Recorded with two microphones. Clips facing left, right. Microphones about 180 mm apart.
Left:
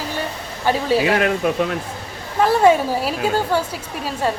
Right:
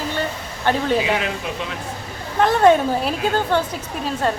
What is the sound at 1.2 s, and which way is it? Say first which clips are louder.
Speech: left 7 dB; 55° left (ahead or behind).